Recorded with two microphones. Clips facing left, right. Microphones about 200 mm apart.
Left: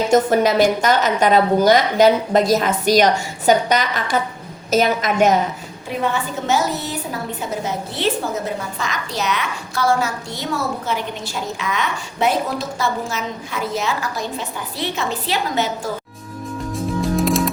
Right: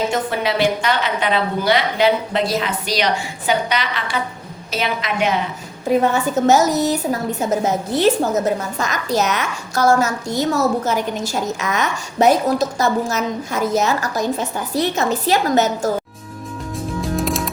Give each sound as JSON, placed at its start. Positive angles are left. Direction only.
{"t": 0.1, "sound": "a woman's voice", "side_deg": 45}
{"t": 6.0, "sound": "a woman's voice", "side_deg": -45}
{"t": 17.0, "sound": "music", "side_deg": 0}